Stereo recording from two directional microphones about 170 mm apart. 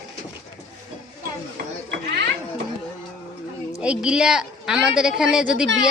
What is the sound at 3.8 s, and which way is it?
A woman's voice, 5° right (ahead or behind).